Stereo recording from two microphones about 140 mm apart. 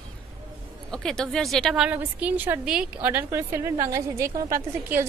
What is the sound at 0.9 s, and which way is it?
A woman's voice, 5° left (ahead or behind).